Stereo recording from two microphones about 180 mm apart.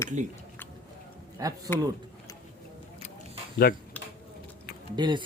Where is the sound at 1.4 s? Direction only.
20° right (ahead or behind).